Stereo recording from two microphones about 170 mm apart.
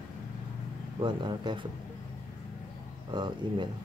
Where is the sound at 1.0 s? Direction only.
25° right (ahead or behind).